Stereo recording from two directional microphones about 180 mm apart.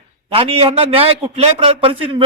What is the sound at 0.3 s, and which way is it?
A man's voice, 30° right (ahead or behind).